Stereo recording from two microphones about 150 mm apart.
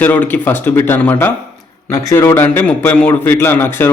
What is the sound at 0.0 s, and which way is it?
A man's voice, 10° left (ahead or behind).